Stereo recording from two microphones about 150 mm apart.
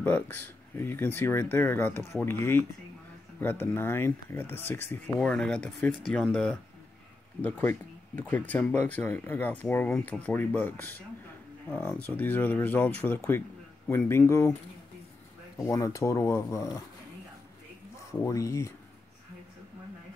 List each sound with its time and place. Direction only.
0.0 s speech: 10° left (ahead or behind)
15.5 s speech: 20° left (ahead or behind)
17.9 s speech: 20° left (ahead or behind)